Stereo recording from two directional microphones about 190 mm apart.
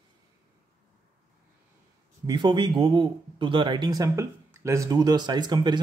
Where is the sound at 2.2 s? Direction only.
25° right (ahead or behind).